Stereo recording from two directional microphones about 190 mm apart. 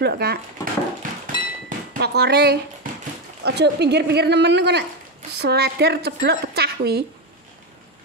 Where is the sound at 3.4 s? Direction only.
60° right (ahead or behind).